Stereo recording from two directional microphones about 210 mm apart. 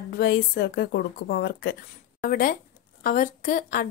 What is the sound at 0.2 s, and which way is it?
A woman's voice, 50° left (ahead or behind).